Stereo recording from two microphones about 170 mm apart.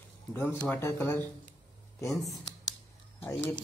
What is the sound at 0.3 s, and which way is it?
A man's voice, 10° left (ahead or behind).